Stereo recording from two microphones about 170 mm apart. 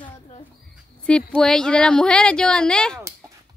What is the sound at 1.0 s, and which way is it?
Speech, 5° left (ahead or behind).